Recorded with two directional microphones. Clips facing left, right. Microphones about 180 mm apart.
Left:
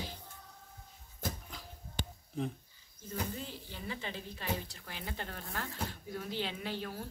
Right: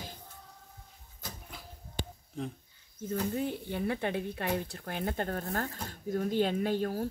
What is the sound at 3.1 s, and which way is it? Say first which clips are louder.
A woman's voice: right 8 dB; 60° right (ahead or behind).